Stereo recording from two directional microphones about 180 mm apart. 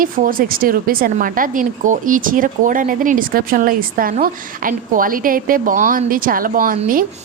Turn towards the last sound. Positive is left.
turn(degrees=-50)  # may be behind; listen again after turning